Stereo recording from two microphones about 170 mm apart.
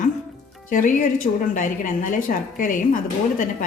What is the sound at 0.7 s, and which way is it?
A woman's voice, 50° left (ahead or behind).